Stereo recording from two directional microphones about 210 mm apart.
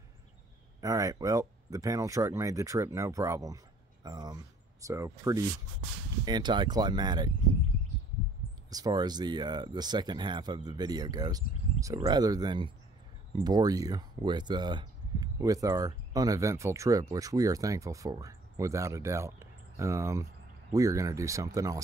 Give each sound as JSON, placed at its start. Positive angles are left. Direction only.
{"t": 0.7, "sound": "speech", "side_deg": -15}
{"t": 8.6, "sound": "speech", "side_deg": -20}